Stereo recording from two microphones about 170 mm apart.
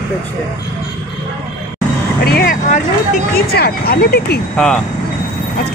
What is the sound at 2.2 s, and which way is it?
Speech, 65° left (ahead or behind).